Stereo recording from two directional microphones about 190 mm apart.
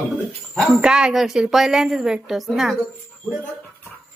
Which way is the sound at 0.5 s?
Centre (ahead or behind).